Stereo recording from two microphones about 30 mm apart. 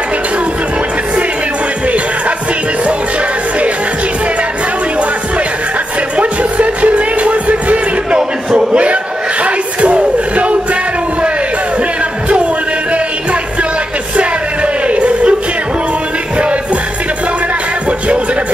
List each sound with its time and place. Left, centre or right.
6.1 s music: right
8.2 s a sound: right
9.4 s music: right
14.1 s music: right
17.8 s music: right